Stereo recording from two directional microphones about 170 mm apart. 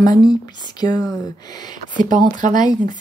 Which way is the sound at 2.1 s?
50° right (ahead or behind).